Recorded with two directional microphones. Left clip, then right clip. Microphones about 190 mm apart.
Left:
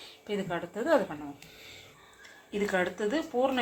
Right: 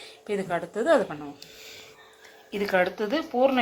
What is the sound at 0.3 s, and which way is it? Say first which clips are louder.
Speech: right 5 dB; 25° right (ahead or behind).